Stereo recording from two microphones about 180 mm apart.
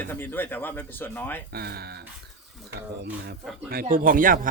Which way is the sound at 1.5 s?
60° right (ahead or behind).